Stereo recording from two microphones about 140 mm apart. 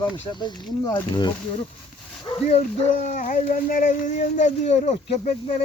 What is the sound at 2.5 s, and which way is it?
Speech, 50° left (ahead or behind).